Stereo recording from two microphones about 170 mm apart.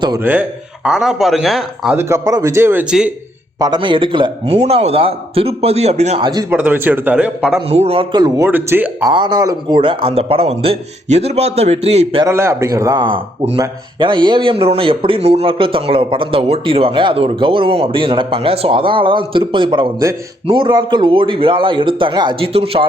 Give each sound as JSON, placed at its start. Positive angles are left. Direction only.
{"t": 0.2, "sound": "speech", "side_deg": -10}
{"t": 2.0, "sound": "speech", "side_deg": -15}
{"t": 3.6, "sound": "a man's voice", "side_deg": -25}
{"t": 6.5, "sound": "speech", "side_deg": -10}
{"t": 7.7, "sound": "a man's voice", "side_deg": -35}
{"t": 8.4, "sound": "speech", "side_deg": -10}
{"t": 9.1, "sound": "a man's voice", "side_deg": -25}
{"t": 12.2, "sound": "a man's voice", "side_deg": -15}